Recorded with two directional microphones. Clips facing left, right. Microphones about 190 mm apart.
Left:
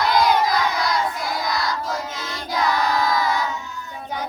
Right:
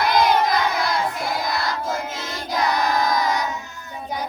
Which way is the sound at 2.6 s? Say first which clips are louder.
Even; 20° right (ahead or behind).